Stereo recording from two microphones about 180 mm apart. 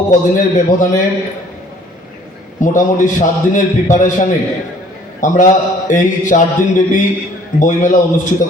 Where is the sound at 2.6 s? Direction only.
45° left (ahead or behind).